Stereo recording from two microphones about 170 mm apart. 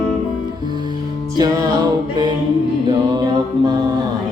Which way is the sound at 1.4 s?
20° right (ahead or behind).